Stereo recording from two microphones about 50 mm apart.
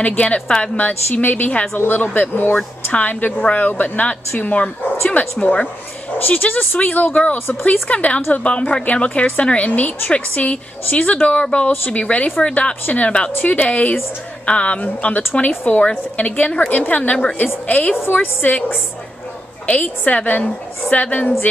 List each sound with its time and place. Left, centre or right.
0.0 s a woman's voice: left
0.7 s speech: left
2.9 s a woman's voice: left
5.4 s a woman's voice: centre
6.1 s a woman's voice: left
11.7 s speech: left
12.0 s a woman's voice: left